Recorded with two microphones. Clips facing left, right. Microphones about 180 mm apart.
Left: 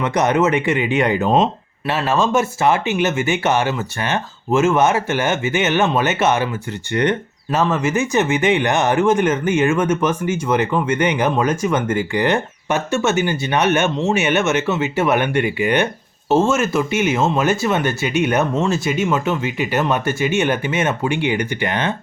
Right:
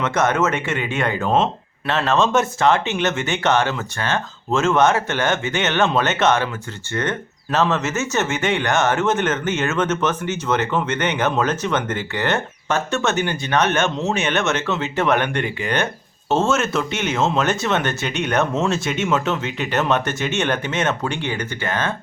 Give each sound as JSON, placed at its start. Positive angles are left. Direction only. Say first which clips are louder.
{"t": 0.0, "sound": "speech", "louder": "left 3 dB", "side_deg": 15}